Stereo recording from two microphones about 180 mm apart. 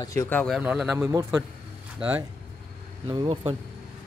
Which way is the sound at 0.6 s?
5° right (ahead or behind).